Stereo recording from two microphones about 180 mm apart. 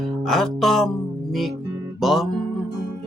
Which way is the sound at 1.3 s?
Centre (ahead or behind).